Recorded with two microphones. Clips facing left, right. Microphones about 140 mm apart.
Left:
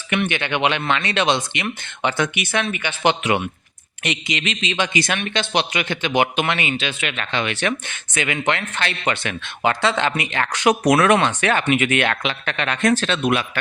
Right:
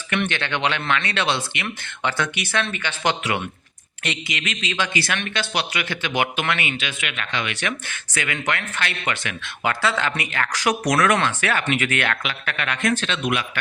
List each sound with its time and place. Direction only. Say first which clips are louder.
0.3 s speech: left 3 dB; 15° left (ahead or behind); by 13.4 s 35° left (ahead or behind)